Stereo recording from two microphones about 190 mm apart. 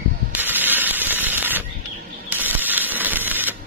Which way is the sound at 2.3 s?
10° right (ahead or behind).